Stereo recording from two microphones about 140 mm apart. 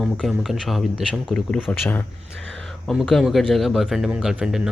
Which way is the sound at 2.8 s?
Centre (ahead or behind).